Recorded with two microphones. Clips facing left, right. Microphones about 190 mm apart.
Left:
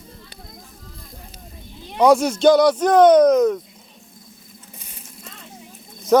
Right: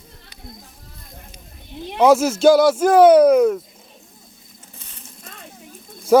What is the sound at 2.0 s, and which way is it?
Speech, 5° right (ahead or behind).